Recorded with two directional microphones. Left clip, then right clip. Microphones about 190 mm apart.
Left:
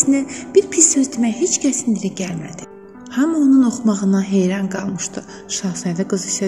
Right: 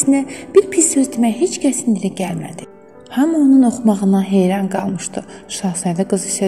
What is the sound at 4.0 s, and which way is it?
A woman's voice, 20° right (ahead or behind).